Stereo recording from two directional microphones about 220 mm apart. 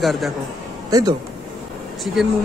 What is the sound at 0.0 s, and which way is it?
Speech, centre (ahead or behind).